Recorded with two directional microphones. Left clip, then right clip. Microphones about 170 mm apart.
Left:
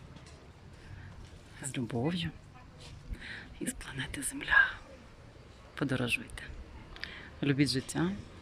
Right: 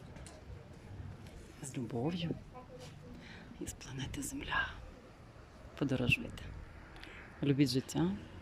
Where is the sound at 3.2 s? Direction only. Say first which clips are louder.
Left 8 dB; 10° right (ahead or behind).